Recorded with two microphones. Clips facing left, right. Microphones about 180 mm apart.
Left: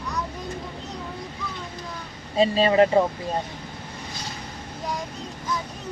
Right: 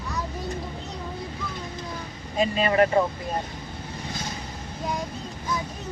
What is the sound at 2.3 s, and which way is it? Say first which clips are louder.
Speech: left 3 dB; 30° left (ahead or behind).